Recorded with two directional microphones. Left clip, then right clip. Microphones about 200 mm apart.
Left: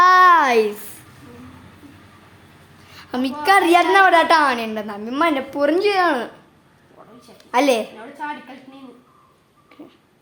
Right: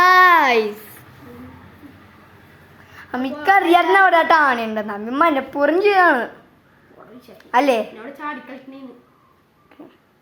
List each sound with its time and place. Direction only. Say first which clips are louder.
0.0 s a sound: even; 10° left (ahead or behind)
2.9 s a woman's voice: left 1 dB; 15° left (ahead or behind)
3.8 s a woman's voice: even; 5° right (ahead or behind)
7.3 s a woman's voice: right 1 dB; 10° left (ahead or behind)